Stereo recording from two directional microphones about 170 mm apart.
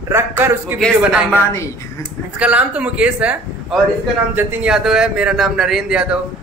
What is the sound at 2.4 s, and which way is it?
A man's voice, 5° right (ahead or behind).